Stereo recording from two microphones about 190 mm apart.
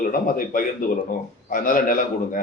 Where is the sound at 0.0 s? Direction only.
45° left (ahead or behind).